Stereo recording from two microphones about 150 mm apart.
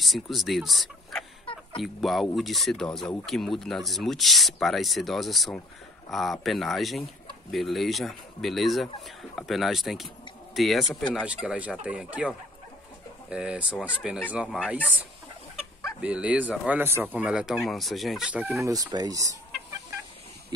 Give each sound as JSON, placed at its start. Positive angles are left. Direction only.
{"t": 0.0, "sound": "speech", "side_deg": 0}
{"t": 1.4, "sound": "a sound", "side_deg": 35}
{"t": 1.8, "sound": "speech", "side_deg": 0}
{"t": 16.0, "sound": "speech", "side_deg": -10}
{"t": 18.6, "sound": "speech", "side_deg": -25}